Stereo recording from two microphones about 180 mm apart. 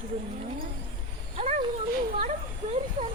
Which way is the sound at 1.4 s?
40° right (ahead or behind).